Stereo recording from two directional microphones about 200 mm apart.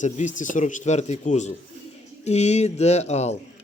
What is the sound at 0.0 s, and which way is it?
Speech, 40° left (ahead or behind).